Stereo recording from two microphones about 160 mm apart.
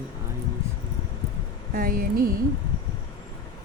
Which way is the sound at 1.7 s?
60° right (ahead or behind).